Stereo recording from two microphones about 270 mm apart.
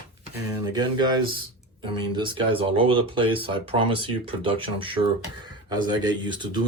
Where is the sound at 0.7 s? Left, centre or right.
Centre.